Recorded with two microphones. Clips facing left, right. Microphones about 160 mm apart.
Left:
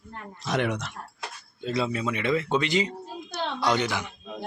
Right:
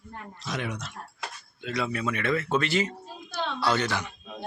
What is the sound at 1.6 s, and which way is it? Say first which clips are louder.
A man's voice: left 3 dB; 30° left (ahead or behind).